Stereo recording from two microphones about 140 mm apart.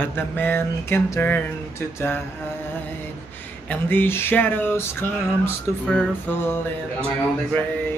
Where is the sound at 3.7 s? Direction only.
15° left (ahead or behind).